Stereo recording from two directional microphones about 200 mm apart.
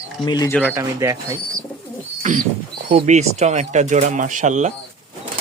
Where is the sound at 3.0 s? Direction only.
35° right (ahead or behind).